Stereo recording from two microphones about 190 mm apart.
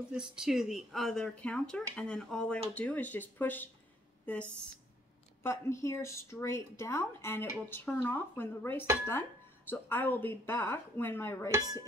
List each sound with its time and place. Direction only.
0.1 s speech: 5° right (ahead or behind)
5.4 s speech: 15° left (ahead or behind)
11.5 s a sound: 20° right (ahead or behind)